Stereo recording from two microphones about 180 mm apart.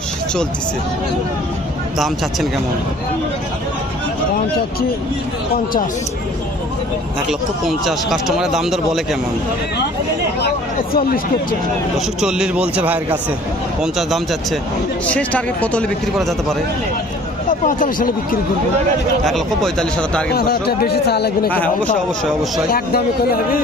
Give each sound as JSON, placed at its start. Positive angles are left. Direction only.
{"t": 7.3, "sound": "speech", "side_deg": 0}
{"t": 10.9, "sound": "speech", "side_deg": 55}
{"t": 12.2, "sound": "a man's voice", "side_deg": -5}
{"t": 17.6, "sound": "speech", "side_deg": 45}
{"t": 19.2, "sound": "speech", "side_deg": 0}
{"t": 20.3, "sound": "speech", "side_deg": 60}
{"t": 22.7, "sound": "speech", "side_deg": 55}